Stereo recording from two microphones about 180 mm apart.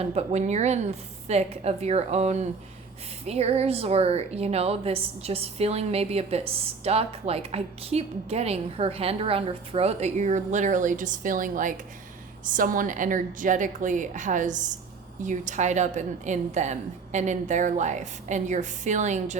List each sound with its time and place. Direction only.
0.0 s a woman's voice: 35° right (ahead or behind)